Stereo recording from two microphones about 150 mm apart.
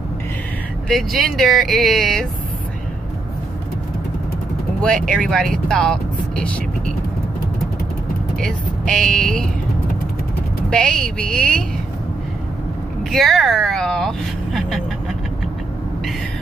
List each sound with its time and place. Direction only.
0.8 s speech: centre (ahead or behind)
4.8 s speech: 5° left (ahead or behind)
8.4 s speech: 5° left (ahead or behind)
10.7 s speech: 5° left (ahead or behind)
13.1 s speech: centre (ahead or behind)